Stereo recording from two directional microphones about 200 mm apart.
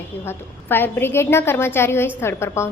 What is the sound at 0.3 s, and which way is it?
A woman's voice, 10° left (ahead or behind).